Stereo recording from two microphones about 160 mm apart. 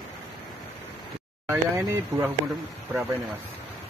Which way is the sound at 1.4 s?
15° right (ahead or behind).